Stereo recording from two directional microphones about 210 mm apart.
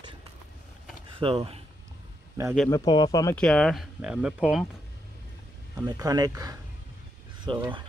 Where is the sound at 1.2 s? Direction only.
25° right (ahead or behind).